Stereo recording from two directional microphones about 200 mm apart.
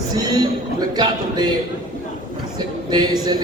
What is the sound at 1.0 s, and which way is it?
Speech, 20° right (ahead or behind).